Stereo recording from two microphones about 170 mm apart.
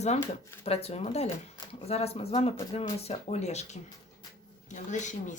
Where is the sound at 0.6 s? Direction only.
35° left (ahead or behind).